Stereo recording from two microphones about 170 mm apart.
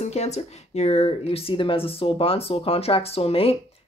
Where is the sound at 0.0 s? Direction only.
40° left (ahead or behind).